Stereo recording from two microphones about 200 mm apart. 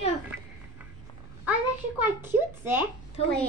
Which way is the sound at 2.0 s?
10° right (ahead or behind).